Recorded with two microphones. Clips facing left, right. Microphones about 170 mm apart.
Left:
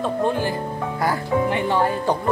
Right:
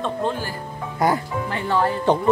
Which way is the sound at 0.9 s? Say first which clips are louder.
Right 4 dB; 20° right (ahead or behind).